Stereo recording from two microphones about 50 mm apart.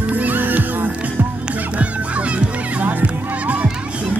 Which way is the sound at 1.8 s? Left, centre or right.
Right.